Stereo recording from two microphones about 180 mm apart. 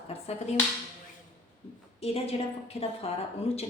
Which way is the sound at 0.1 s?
35° left (ahead or behind).